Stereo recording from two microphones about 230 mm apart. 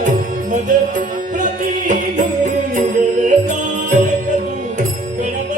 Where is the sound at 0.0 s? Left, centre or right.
Right.